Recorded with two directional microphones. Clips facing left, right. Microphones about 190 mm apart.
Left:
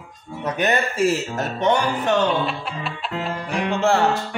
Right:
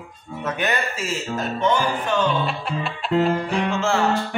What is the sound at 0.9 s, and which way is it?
Speech, 65° left (ahead or behind).